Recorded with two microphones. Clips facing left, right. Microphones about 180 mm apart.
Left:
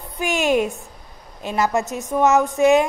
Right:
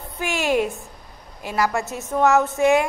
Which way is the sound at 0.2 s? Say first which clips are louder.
Left 2 dB; 20° left (ahead or behind).